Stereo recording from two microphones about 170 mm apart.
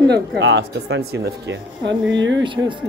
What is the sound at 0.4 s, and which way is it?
Speech, 90° right.